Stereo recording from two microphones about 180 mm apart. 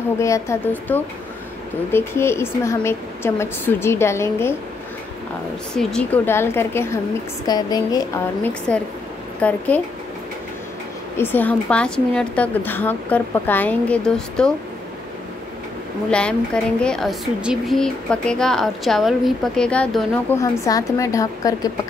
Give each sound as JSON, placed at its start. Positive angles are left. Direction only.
{"t": 0.2, "sound": "a woman's voice", "side_deg": 15}
{"t": 5.8, "sound": "a woman's voice", "side_deg": 5}
{"t": 9.4, "sound": "a woman's voice", "side_deg": 5}
{"t": 11.1, "sound": "a woman's voice", "side_deg": 10}
{"t": 16.1, "sound": "a woman's voice", "side_deg": 5}
{"t": 20.3, "sound": "a woman's voice", "side_deg": 20}